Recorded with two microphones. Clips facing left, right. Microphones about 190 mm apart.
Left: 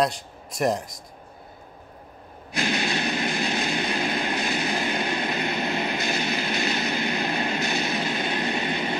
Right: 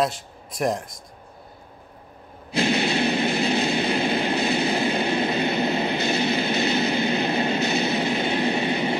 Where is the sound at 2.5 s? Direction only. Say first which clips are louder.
Right 5 dB; 25° right (ahead or behind).